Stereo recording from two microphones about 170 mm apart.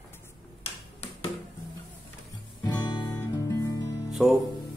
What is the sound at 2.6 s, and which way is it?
Music, 25° left (ahead or behind).